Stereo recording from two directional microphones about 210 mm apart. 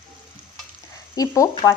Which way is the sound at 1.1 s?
15° left (ahead or behind).